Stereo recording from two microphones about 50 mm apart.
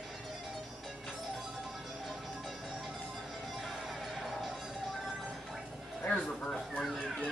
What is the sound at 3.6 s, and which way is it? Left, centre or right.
Music, centre.